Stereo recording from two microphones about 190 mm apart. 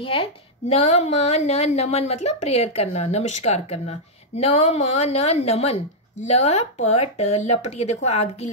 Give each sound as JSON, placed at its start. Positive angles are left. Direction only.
{"t": 0.0, "sound": "a woman's voice", "side_deg": 30}